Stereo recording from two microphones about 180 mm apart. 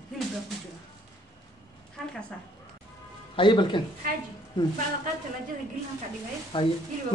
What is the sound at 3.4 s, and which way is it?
Speech, 25° left (ahead or behind).